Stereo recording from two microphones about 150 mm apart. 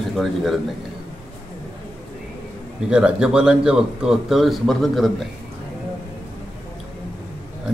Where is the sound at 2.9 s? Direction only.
5° right (ahead or behind).